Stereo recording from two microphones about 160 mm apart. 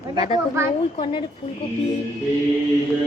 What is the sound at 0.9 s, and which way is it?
Speech, 35° left (ahead or behind).